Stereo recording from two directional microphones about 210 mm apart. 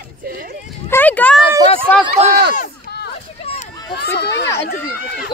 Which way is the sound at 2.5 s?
45° left (ahead or behind).